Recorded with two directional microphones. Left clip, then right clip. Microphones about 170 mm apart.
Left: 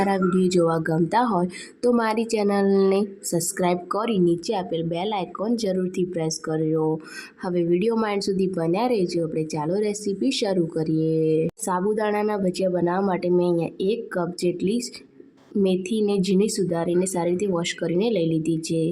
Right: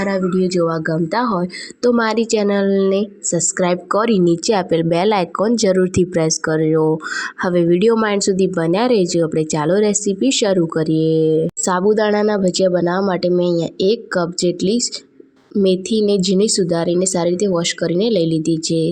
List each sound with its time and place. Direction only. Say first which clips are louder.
0.0 s speech: right 3 dB; 20° right (ahead or behind)